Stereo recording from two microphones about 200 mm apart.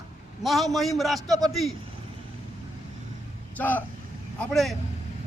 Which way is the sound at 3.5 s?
10° left (ahead or behind).